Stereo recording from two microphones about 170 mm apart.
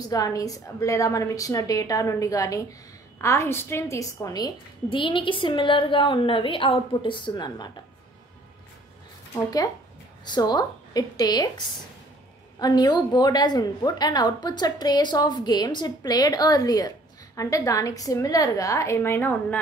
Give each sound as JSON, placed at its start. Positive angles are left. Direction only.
{"t": 0.1, "sound": "a woman's voice", "side_deg": 20}
{"t": 9.3, "sound": "a woman's voice", "side_deg": 20}